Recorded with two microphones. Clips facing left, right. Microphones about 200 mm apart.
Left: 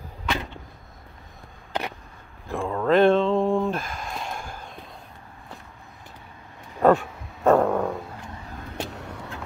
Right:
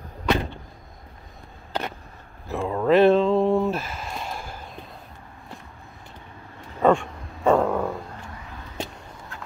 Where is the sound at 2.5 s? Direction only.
5° right (ahead or behind).